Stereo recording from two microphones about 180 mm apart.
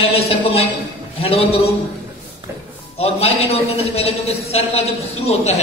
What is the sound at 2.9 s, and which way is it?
A man's voice, 35° left (ahead or behind).